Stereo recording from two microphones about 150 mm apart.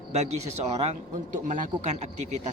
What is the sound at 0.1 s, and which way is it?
A man's voice, 45° right (ahead or behind).